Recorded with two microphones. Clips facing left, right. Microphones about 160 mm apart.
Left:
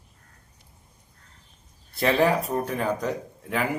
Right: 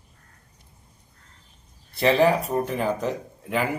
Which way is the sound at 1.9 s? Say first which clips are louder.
Right 2 dB; centre (ahead or behind).